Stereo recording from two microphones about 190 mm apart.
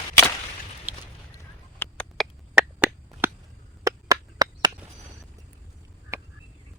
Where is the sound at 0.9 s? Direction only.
10° right (ahead or behind).